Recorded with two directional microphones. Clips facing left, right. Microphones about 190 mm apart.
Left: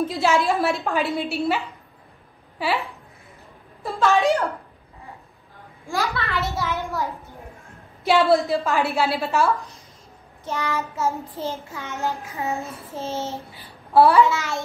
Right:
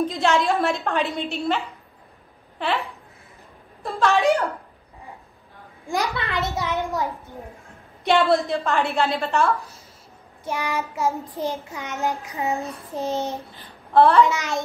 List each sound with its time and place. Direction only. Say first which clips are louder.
0.0 s a woman's voice: even; 5° left (ahead or behind)
2.6 s a woman's voice: left 1 dB; centre (ahead or behind)
5.9 s child singing: even; 20° right (ahead or behind)
8.0 s a woman's voice: left 1 dB; 5° left (ahead or behind)
10.4 s child singing: even; 10° right (ahead or behind)
13.5 s a sound: left 1 dB; 10° left (ahead or behind)
14.2 s child singing: even; 15° right (ahead or behind)